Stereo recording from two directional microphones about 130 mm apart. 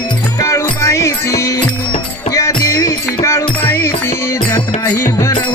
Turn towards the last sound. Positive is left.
turn(degrees=40)  # may be behind; listen again after turning